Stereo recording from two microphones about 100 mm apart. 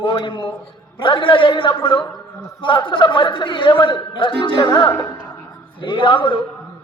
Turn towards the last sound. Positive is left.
turn(degrees=55)  # may be behind; listen again after turning